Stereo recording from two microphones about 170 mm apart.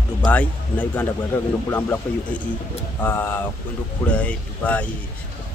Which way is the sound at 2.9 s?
15° left (ahead or behind).